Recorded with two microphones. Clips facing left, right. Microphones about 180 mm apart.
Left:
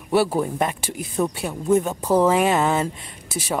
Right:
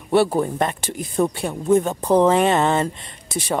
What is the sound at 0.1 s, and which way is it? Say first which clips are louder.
Speech: right 2 dB; 5° left (ahead or behind).